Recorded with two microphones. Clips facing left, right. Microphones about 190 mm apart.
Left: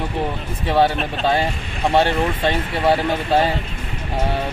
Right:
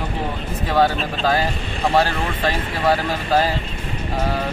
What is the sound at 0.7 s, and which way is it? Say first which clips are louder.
Speech: left 1 dB; 25° left (ahead or behind).